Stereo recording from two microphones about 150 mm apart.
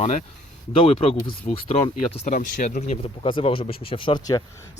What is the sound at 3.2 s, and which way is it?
Speech, 35° left (ahead or behind).